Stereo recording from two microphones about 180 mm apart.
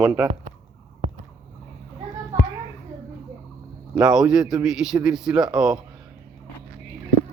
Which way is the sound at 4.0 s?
5° right (ahead or behind).